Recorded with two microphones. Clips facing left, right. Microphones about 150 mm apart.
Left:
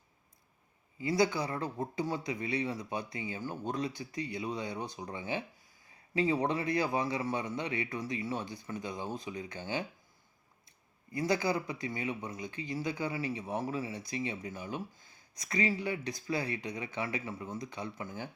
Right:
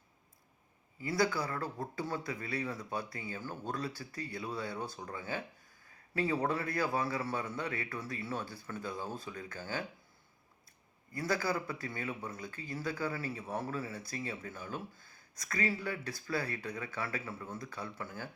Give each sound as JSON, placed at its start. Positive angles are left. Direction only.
{"t": 0.9, "sound": "speech", "side_deg": 20}
{"t": 11.1, "sound": "speech", "side_deg": 20}